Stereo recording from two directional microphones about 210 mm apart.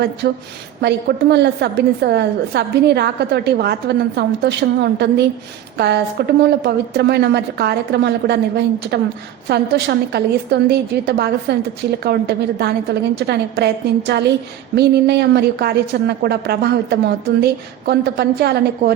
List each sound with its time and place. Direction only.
0.2 s a woman's voice: 50° right (ahead or behind)